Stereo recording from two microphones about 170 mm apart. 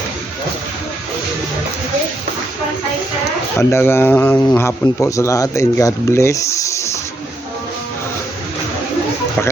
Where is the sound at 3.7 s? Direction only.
15° left (ahead or behind).